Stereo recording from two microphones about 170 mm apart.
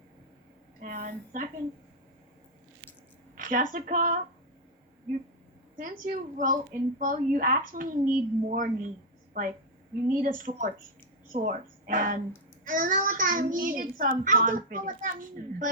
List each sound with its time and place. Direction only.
0.8 s a sound: 50° right (ahead or behind)
3.3 s a child's voice: 55° right (ahead or behind)
5.7 s a child's voice: 55° right (ahead or behind)